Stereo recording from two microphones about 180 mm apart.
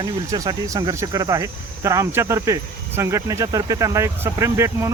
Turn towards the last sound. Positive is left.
turn(degrees=-15)  # may be behind; listen again after turning